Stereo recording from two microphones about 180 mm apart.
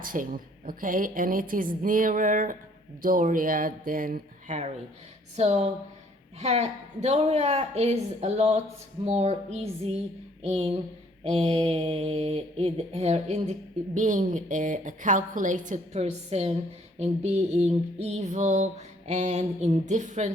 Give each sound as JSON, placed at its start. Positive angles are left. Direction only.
{"t": 0.0, "sound": "a woman's voice", "side_deg": -50}
{"t": 5.4, "sound": "mantra", "side_deg": -35}